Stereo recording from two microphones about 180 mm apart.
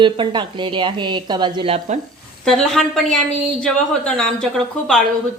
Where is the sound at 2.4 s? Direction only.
Centre (ahead or behind).